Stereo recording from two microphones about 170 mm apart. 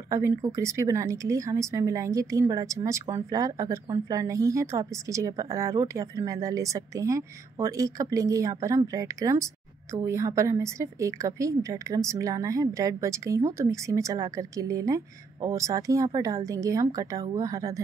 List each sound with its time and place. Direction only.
0.1 s a woman's voice: 15° right (ahead or behind)